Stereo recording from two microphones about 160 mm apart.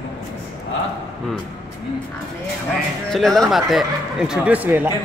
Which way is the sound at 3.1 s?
Centre (ahead or behind).